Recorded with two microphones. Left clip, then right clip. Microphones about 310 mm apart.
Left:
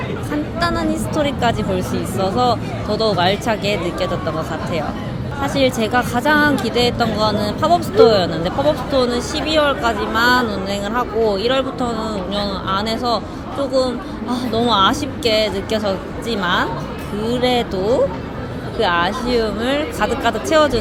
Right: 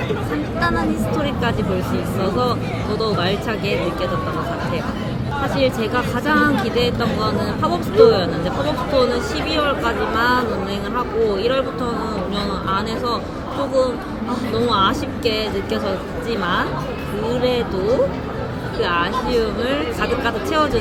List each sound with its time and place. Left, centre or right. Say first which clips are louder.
0.6 s speech: left 1 dB; centre
5.5 s speech: left 4 dB; centre
14.5 s speech: left 3 dB; centre
18.8 s speech: left 2 dB; centre